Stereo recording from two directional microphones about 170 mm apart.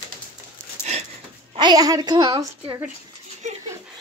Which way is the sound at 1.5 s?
25° right (ahead or behind).